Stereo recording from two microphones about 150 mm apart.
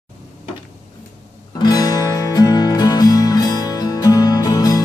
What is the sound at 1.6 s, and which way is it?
Music, 25° left (ahead or behind).